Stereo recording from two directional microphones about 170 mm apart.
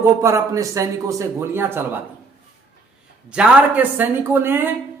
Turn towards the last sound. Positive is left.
turn(degrees=-15)  # may be behind; listen again after turning